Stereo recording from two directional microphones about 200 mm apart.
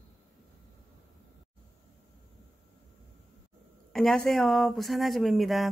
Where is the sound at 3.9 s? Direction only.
Centre (ahead or behind).